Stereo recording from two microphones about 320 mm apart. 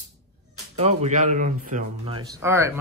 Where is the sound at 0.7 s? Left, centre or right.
Centre.